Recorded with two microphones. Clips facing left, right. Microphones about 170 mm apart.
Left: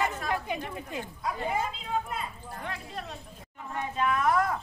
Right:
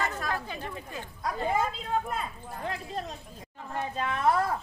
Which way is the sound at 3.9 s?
30° right (ahead or behind).